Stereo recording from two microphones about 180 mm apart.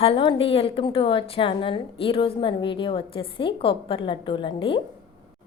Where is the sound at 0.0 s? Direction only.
30° left (ahead or behind).